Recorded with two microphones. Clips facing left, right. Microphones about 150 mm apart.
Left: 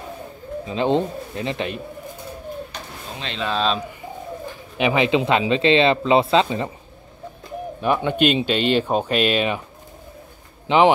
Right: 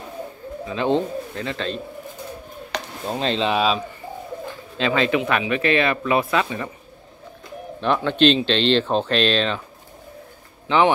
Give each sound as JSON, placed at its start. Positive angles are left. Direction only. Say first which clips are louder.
{"t": 0.7, "sound": "speech", "louder": "left 1 dB", "side_deg": 20}
{"t": 2.7, "sound": "a sound", "louder": "right 7 dB", "side_deg": -90}
{"t": 3.1, "sound": "speech", "louder": "right 11 dB", "side_deg": -35}
{"t": 3.3, "sound": "speech", "louder": "right 1 dB", "side_deg": -15}
{"t": 4.7, "sound": "speech", "louder": "left 2 dB", "side_deg": 15}
{"t": 7.8, "sound": "speech", "louder": "right 1 dB", "side_deg": 10}